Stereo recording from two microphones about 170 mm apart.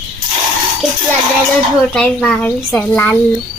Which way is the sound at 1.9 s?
5° left (ahead or behind).